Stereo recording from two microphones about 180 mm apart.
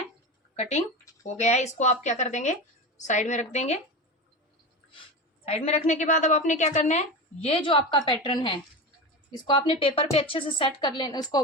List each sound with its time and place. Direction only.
0.5 s a woman's voice: 35° left (ahead or behind)
5.5 s a woman's voice: 35° left (ahead or behind)